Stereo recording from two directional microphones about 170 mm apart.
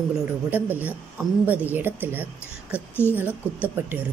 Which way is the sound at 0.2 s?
10° right (ahead or behind).